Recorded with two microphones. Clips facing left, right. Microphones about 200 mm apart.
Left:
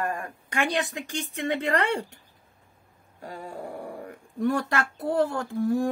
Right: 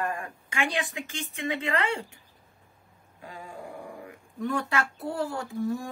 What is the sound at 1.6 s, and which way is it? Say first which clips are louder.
Speech: left 3 dB; 40° left (ahead or behind).